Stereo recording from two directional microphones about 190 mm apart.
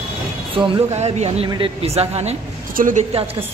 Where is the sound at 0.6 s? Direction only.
35° right (ahead or behind).